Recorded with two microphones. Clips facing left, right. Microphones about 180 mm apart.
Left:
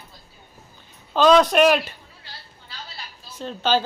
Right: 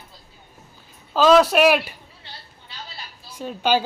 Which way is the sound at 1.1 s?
5° right (ahead or behind).